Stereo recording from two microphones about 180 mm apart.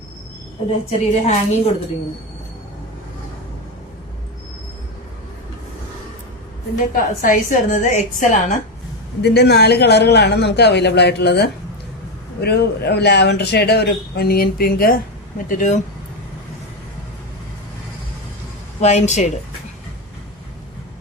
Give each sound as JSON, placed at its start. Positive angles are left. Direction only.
{"t": 0.9, "sound": "a woman's voice", "side_deg": 35}
{"t": 6.9, "sound": "a woman's voice", "side_deg": 50}
{"t": 9.2, "sound": "a man's voice", "side_deg": 65}
{"t": 15.4, "sound": "a woman's voice", "side_deg": 45}
{"t": 18.8, "sound": "a woman's voice", "side_deg": 40}